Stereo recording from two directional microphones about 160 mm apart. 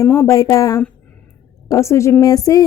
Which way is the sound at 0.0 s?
15° left (ahead or behind).